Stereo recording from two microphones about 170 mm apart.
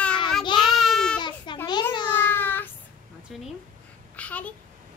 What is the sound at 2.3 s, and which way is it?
Child singing, 10° left (ahead or behind).